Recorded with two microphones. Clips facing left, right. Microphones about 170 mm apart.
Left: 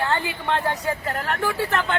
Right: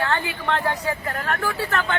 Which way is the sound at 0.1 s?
15° left (ahead or behind).